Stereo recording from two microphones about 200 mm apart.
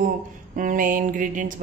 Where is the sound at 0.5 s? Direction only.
40° right (ahead or behind).